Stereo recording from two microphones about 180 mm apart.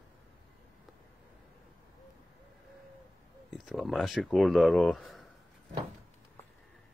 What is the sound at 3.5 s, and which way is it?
Speech, centre (ahead or behind).